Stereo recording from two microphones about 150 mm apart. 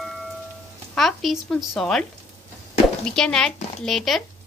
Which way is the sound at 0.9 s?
Centre (ahead or behind).